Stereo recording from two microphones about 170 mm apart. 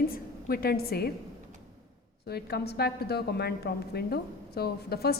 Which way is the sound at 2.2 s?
70° left (ahead or behind).